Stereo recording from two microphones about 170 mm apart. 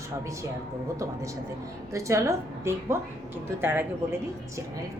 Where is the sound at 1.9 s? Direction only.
15° right (ahead or behind).